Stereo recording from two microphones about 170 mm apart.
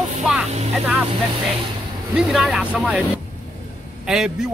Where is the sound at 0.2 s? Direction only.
Centre (ahead or behind).